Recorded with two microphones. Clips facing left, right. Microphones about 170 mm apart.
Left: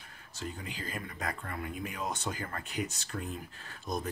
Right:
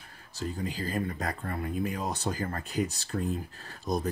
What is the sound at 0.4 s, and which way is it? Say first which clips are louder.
Speech: right 7 dB; 35° right (ahead or behind).